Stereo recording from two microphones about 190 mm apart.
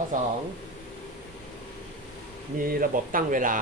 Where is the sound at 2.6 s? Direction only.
45° right (ahead or behind).